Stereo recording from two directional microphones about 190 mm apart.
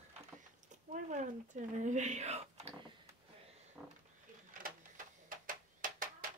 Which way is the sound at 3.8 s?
5° right (ahead or behind).